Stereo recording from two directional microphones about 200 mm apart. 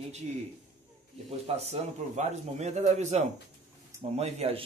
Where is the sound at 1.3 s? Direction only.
30° right (ahead or behind).